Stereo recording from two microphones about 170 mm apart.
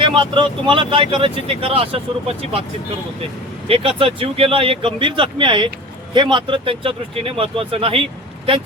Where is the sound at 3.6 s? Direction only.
35° right (ahead or behind).